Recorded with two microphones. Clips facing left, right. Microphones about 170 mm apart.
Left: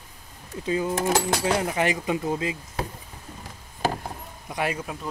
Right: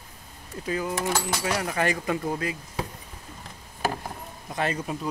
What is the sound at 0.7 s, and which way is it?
Speech, 25° left (ahead or behind).